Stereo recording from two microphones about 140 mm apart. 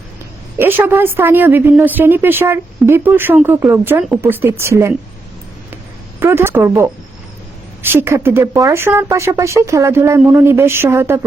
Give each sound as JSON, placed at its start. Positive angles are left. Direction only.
{"t": 0.6, "sound": "a woman's voice", "side_deg": -15}
{"t": 5.7, "sound": "a sound", "side_deg": -15}
{"t": 7.8, "sound": "a woman's voice", "side_deg": -15}